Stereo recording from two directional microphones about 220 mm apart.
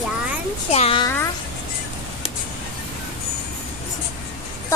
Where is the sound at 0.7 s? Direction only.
25° left (ahead or behind).